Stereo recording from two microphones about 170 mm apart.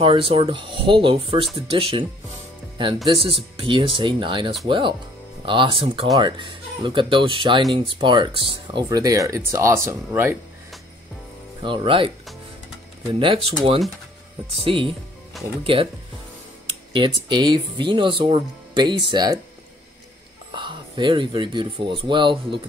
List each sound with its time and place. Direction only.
0.0 s speech: 30° right (ahead or behind)
3.1 s speech: 35° right (ahead or behind); by 10.3 s 15° right (ahead or behind)
11.6 s speech: 30° right (ahead or behind)
13.1 s speech: 30° right (ahead or behind)
16.9 s speech: 30° right (ahead or behind)
20.5 s speech: 30° right (ahead or behind)